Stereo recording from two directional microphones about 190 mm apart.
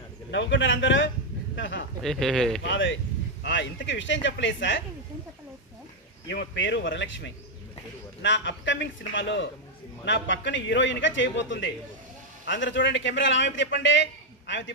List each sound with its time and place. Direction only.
0.3 s a man's voice: 70° left (ahead or behind)
2.0 s speech: centre (ahead or behind)
2.6 s a man's voice: 70° left (ahead or behind)
6.2 s a man's voice: 70° left (ahead or behind)